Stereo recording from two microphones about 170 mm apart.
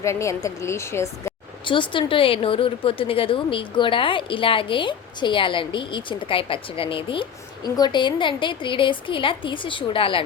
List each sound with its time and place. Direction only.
0.0 s a woman's voice: 15° left (ahead or behind)
1.6 s a woman's voice: 30° left (ahead or behind)